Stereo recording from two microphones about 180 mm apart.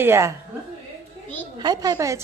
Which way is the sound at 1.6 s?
20° right (ahead or behind).